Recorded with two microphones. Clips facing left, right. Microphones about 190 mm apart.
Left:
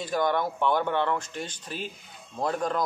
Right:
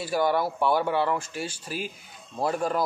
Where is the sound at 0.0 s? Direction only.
10° right (ahead or behind).